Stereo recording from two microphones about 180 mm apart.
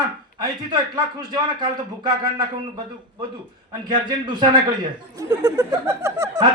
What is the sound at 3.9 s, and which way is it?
Speech, 25° right (ahead or behind).